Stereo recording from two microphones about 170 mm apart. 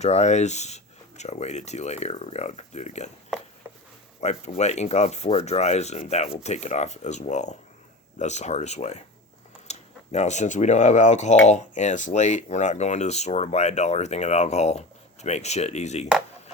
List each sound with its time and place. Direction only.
0.0 s speech: 40° left (ahead or behind)
4.2 s speech: 40° left (ahead or behind)